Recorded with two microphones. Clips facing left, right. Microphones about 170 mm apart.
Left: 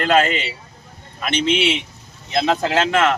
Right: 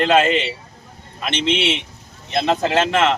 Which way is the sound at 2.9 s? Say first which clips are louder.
Even; 25° right (ahead or behind).